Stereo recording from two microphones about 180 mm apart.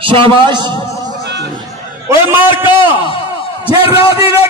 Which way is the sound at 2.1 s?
15° right (ahead or behind).